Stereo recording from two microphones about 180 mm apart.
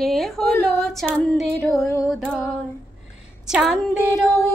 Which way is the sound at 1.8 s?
15° left (ahead or behind).